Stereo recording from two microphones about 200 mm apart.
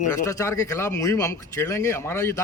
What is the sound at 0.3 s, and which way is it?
Speech, 15° left (ahead or behind).